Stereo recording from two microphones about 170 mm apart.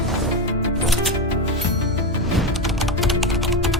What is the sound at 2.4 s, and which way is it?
Music, centre (ahead or behind).